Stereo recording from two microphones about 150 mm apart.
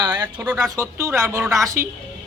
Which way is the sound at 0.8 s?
20° right (ahead or behind).